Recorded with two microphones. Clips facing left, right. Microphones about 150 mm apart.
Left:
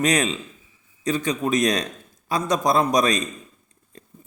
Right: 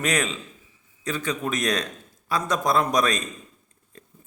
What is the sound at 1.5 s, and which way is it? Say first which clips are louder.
A man's voice: left 7 dB; 15° left (ahead or behind).